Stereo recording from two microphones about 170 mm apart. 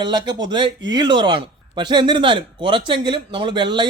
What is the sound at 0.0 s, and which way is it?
A man's voice, 25° right (ahead or behind).